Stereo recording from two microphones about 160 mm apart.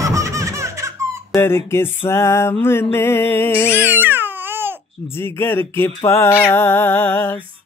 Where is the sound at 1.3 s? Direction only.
15° left (ahead or behind).